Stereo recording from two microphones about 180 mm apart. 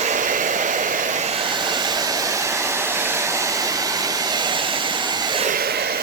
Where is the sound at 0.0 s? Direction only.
45° right (ahead or behind); by 5.4 s 25° right (ahead or behind).